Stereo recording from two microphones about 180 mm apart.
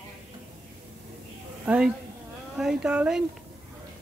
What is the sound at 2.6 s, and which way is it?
Speech, 5° right (ahead or behind).